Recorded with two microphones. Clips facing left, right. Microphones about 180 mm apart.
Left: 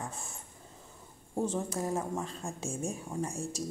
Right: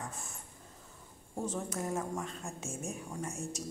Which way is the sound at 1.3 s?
30° left (ahead or behind).